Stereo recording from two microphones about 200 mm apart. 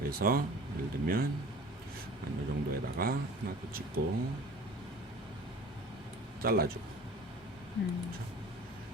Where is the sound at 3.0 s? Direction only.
45° right (ahead or behind).